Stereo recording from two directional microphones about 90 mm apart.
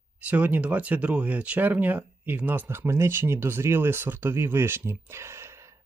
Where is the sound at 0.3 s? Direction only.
20° right (ahead or behind).